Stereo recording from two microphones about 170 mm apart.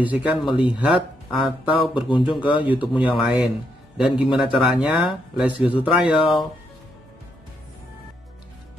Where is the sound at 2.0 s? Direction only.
30° left (ahead or behind).